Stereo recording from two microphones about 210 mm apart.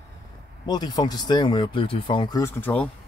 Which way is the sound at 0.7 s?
20° left (ahead or behind).